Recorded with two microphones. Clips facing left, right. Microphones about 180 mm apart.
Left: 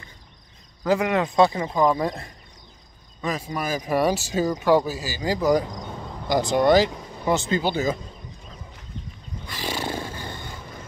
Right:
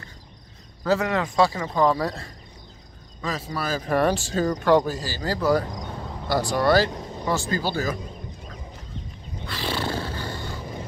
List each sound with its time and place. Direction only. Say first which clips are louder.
0.8 s speech: left 1 dB; 15° left (ahead or behind)
5.7 s a sound: right 1 dB; centre (ahead or behind)
6.2 s speech: left 2 dB; 20° left (ahead or behind)
6.9 s vehicle: right 3 dB; 20° right (ahead or behind)
7.2 s speech: left 3 dB; 20° left (ahead or behind)
9.5 s roar: right 1 dB; 15° left (ahead or behind)